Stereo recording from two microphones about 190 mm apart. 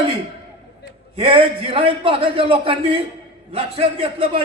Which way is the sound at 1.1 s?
30° right (ahead or behind).